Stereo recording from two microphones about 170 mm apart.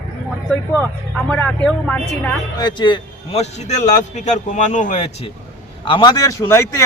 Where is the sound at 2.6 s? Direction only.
25° left (ahead or behind).